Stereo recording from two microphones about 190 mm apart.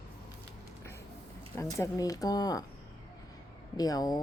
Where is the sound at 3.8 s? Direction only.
20° left (ahead or behind).